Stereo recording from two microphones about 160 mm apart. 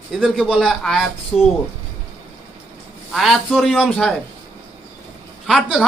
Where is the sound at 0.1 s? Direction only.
Centre (ahead or behind).